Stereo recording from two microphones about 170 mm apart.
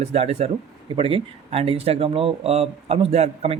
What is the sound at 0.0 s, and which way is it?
Speech, 40° right (ahead or behind).